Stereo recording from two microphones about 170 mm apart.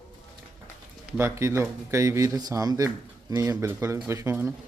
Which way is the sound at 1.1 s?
15° right (ahead or behind).